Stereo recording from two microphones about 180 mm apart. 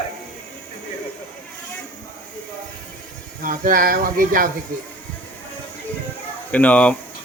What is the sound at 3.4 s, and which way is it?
Speech, 50° right (ahead or behind).